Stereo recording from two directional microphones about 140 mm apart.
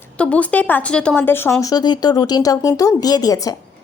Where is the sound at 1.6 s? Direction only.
30° left (ahead or behind).